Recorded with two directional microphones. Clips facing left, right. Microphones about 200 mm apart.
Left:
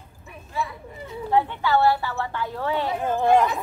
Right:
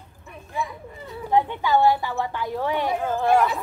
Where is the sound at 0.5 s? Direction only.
15° right (ahead or behind).